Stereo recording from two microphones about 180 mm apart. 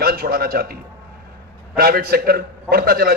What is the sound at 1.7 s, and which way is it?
A man's voice, 55° right (ahead or behind).